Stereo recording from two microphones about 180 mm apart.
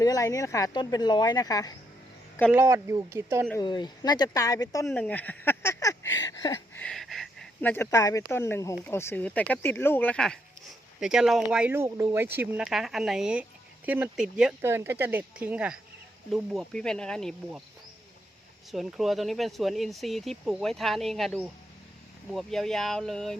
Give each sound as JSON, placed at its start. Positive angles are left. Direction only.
{"t": 0.0, "sound": "speech", "side_deg": 20}
{"t": 2.5, "sound": "speech", "side_deg": -15}
{"t": 3.6, "sound": "speech", "side_deg": 25}
{"t": 6.1, "sound": "a sound", "side_deg": 20}
{"t": 6.8, "sound": "speech", "side_deg": 0}
{"t": 18.7, "sound": "speech", "side_deg": 0}